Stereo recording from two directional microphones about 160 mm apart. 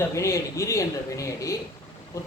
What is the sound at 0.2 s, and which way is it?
Speech, 20° left (ahead or behind).